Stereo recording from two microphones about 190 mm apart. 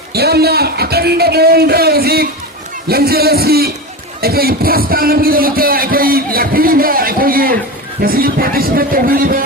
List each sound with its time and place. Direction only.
0.1 s a man's voice: 55° right (ahead or behind)